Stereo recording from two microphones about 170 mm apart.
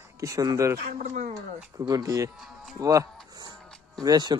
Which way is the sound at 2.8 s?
20° right (ahead or behind).